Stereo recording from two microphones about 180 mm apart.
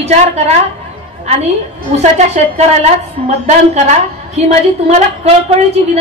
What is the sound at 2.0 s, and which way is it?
A woman's voice, 35° right (ahead or behind).